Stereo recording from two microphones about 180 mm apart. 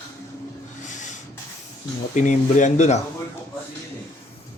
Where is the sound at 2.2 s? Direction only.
40° left (ahead or behind).